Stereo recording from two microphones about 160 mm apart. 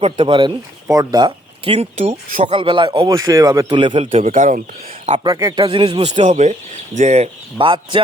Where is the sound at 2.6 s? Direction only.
30° right (ahead or behind).